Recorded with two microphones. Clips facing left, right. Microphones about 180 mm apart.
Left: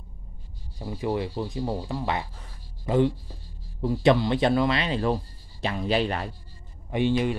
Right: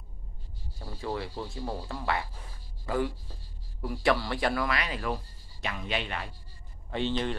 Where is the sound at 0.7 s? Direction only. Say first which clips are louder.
Left 7 dB; 15° left (ahead or behind); by 6.3 s 40° left (ahead or behind).